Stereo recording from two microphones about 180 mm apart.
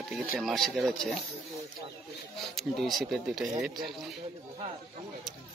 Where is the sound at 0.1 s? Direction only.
Centre (ahead or behind).